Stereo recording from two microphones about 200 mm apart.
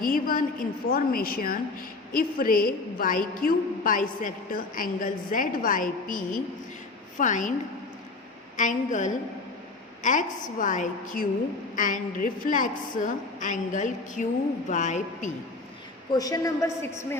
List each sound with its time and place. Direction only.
0.0 s a woman's voice: 45° left (ahead or behind)
8.5 s a woman's voice: 40° left (ahead or behind)
16.1 s a woman's voice: 20° left (ahead or behind)